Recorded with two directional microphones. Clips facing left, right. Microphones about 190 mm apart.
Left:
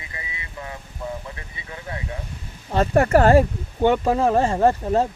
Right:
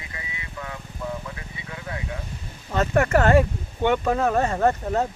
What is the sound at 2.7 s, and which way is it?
Speech, 35° left (ahead or behind).